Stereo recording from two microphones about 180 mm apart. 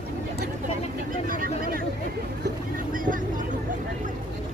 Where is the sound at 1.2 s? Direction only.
50° right (ahead or behind).